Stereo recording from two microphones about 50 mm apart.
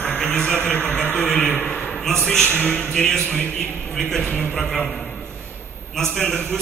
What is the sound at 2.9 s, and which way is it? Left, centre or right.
A man's voice, centre.